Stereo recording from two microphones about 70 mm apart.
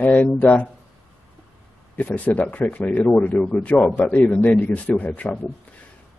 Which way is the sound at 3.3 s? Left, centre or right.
Centre.